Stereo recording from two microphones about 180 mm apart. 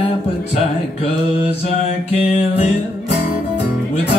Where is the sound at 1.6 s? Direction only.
35° left (ahead or behind).